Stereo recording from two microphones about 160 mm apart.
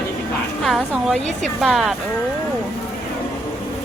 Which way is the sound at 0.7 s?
Centre (ahead or behind).